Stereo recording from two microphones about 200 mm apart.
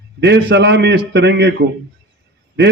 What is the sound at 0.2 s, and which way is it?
A man's voice, 60° right (ahead or behind).